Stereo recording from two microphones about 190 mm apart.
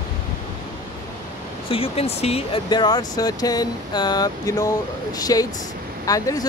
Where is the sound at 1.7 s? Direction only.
30° left (ahead or behind).